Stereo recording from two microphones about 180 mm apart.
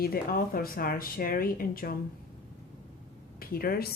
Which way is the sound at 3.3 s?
55° left (ahead or behind).